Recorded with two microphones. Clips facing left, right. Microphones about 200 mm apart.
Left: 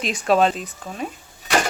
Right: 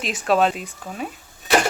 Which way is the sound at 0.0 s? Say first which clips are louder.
Left 1 dB; centre (ahead or behind).